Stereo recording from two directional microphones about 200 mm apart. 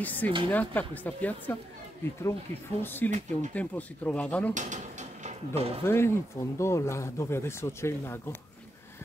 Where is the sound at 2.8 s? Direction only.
10° left (ahead or behind).